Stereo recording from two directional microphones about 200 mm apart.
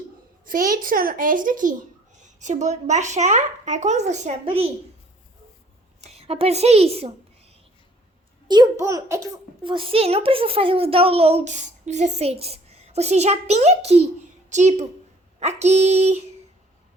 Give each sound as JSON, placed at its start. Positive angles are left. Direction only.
{"t": 0.4, "sound": "a child's voice", "side_deg": -45}
{"t": 6.0, "sound": "a woman's voice", "side_deg": -30}
{"t": 8.4, "sound": "a child's voice", "side_deg": -20}
{"t": 9.7, "sound": "a woman's voice", "side_deg": -30}